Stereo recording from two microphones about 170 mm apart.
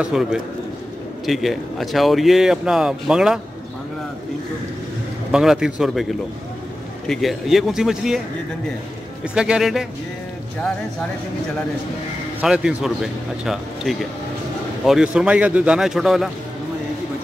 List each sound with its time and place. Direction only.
0.0 s speech: 5° right (ahead or behind)
5.3 s speech: 5° right (ahead or behind)
7.1 s speech: centre (ahead or behind)
9.2 s speech: 5° right (ahead or behind)
12.4 s speech: 5° right (ahead or behind)